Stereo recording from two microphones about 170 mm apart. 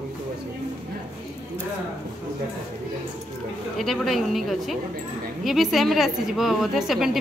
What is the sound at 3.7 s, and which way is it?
A woman's voice, centre (ahead or behind).